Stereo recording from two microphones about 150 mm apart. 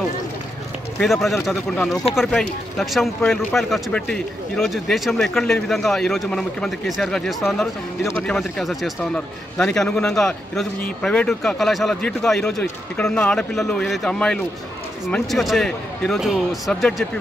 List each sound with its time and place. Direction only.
0.9 s a man's voice: centre (ahead or behind)